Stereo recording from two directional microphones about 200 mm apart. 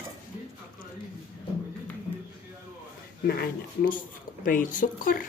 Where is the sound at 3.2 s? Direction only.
45° left (ahead or behind).